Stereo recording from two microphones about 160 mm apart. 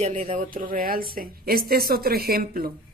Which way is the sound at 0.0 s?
45° right (ahead or behind).